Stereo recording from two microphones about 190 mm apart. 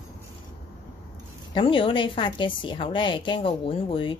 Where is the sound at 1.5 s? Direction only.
25° left (ahead or behind).